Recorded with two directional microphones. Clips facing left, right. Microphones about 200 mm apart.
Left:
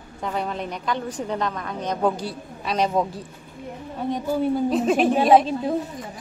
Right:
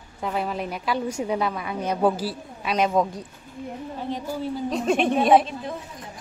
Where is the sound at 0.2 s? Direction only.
5° right (ahead or behind).